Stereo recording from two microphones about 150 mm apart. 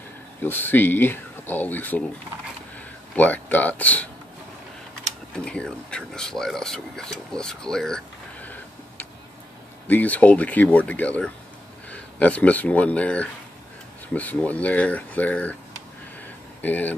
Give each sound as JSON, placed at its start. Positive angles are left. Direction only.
{"t": 0.4, "sound": "speech", "side_deg": 15}
{"t": 3.2, "sound": "speech", "side_deg": 10}
{"t": 5.3, "sound": "speech", "side_deg": 5}
{"t": 16.6, "sound": "speech", "side_deg": 10}